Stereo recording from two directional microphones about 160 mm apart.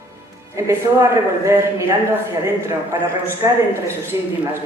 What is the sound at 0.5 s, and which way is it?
A man's voice, 20° right (ahead or behind).